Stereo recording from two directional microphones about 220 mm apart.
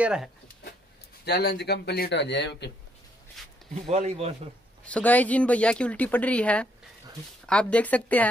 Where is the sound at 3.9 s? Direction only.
30° right (ahead or behind).